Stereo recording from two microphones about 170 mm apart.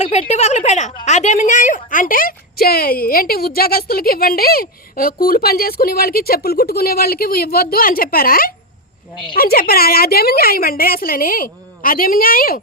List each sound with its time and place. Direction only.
0.0 s a woman's voice: 40° left (ahead or behind); by 12.5 s 55° left (ahead or behind)